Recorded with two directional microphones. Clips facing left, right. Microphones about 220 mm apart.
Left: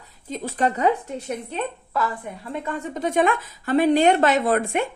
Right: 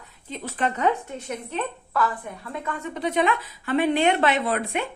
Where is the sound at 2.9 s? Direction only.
45° left (ahead or behind).